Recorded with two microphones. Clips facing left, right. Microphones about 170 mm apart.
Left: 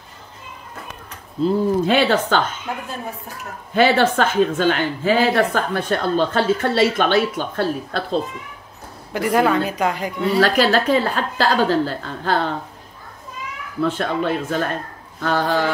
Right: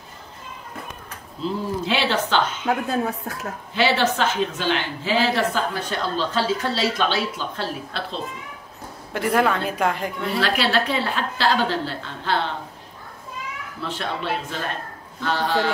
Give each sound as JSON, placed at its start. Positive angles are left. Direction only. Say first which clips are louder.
{"t": 1.4, "sound": "a woman's voice", "louder": "left 8 dB", "side_deg": 50}
{"t": 3.7, "sound": "a woman's voice", "louder": "left 5 dB", "side_deg": 50}
{"t": 9.1, "sound": "a woman's voice", "louder": "left 3 dB", "side_deg": 0}
{"t": 10.4, "sound": "a woman's voice", "louder": "left 5 dB", "side_deg": 45}
{"t": 13.7, "sound": "a woman's voice", "louder": "left 9 dB", "side_deg": 45}